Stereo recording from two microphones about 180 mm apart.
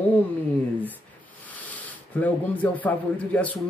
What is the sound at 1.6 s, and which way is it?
Speech, 10° left (ahead or behind).